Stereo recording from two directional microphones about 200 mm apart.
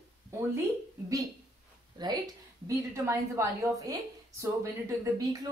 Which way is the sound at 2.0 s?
20° right (ahead or behind).